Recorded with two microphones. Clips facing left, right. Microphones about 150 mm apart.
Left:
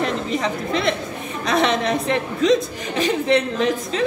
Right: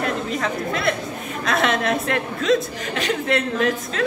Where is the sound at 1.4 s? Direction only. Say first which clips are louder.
Left 2 dB; centre (ahead or behind).